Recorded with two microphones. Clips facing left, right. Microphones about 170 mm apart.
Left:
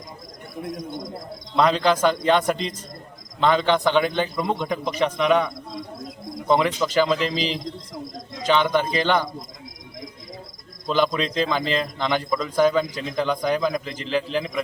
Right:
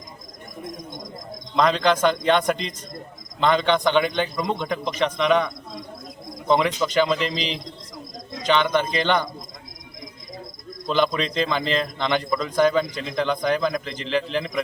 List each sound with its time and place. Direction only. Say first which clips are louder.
0.8 s a man's voice: left 4 dB; 10° left (ahead or behind)
6.5 s a man's voice: even; 5° left (ahead or behind)
10.8 s a man's voice: even; 5° left (ahead or behind)